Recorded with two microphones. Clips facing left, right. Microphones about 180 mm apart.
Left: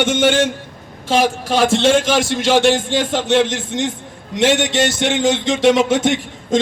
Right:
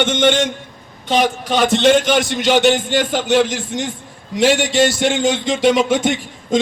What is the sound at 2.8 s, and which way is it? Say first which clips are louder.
Speech: even; 25° left (ahead or behind).